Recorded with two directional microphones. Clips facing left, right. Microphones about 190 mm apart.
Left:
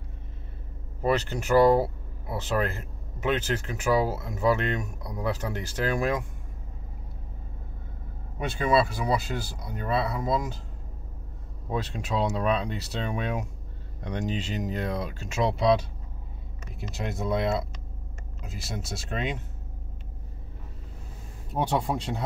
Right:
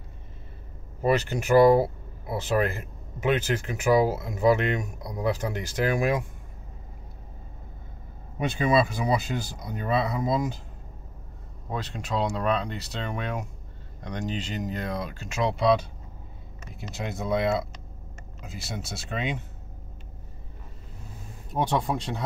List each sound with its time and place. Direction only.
1.0 s speech: 10° right (ahead or behind)
8.4 s speech: 20° right (ahead or behind)
11.7 s speech: 5° left (ahead or behind)
16.9 s speech: centre (ahead or behind)